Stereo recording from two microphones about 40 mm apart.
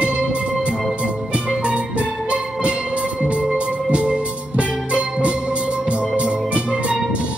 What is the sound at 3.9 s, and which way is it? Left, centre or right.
Music, right.